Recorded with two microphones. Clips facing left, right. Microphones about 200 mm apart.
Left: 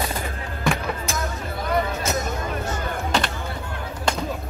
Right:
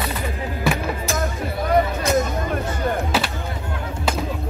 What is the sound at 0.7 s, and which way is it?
Music, 5° right (ahead or behind).